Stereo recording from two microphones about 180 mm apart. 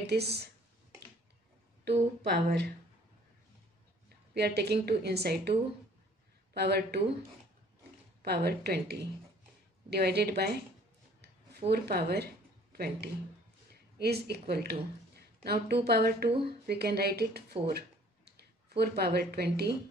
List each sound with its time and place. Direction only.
0.0 s speech: 65° right (ahead or behind)
2.3 s speech: 65° right (ahead or behind)
4.3 s a woman's voice: 60° right (ahead or behind)
6.5 s a woman's voice: 65° right (ahead or behind)
8.2 s a woman's voice: 65° right (ahead or behind)
11.7 s a woman's voice: 60° right (ahead or behind)
16.3 s speech: 30° right (ahead or behind)
16.6 s a woman's voice: 60° right (ahead or behind)
17.7 s a sound: 65° right (ahead or behind)